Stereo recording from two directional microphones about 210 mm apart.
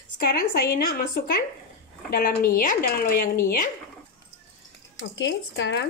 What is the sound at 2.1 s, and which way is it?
Speech, 40° left (ahead or behind).